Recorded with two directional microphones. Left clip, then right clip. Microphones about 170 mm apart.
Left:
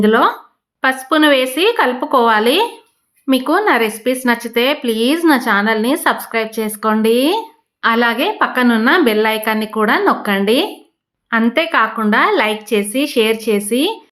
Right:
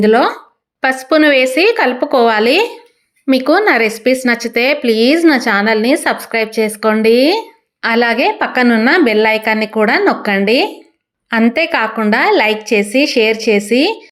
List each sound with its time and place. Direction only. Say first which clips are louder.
0.0 s speech: right 2 dB; 15° right (ahead or behind)